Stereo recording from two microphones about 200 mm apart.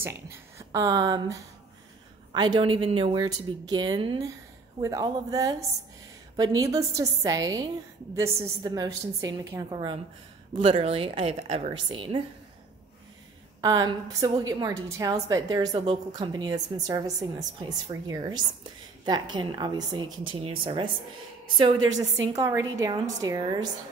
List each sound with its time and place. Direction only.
0.0 s a woman's voice: 15° right (ahead or behind)
13.6 s a woman's voice: 20° right (ahead or behind)